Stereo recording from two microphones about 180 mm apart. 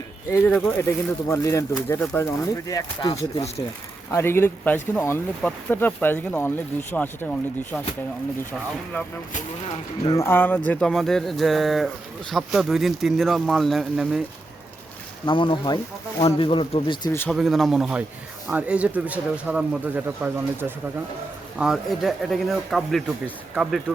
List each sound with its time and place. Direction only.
0.3 s speech: 10° left (ahead or behind)
3.2 s speech: 35° left (ahead or behind)
4.1 s speech: 15° left (ahead or behind)
10.1 s speech: 15° left (ahead or behind); by 14.2 s 5° right (ahead or behind)
15.3 s speech: 25° left (ahead or behind)
17.2 s speech: centre (ahead or behind)
21.6 s speech: centre (ahead or behind)